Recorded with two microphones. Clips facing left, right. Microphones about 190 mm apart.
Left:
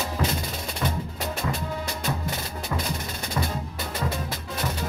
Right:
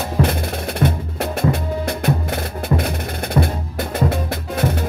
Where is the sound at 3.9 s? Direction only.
60° right (ahead or behind).